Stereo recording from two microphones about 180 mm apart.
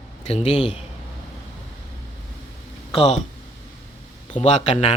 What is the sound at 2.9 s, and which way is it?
Speech, 30° left (ahead or behind).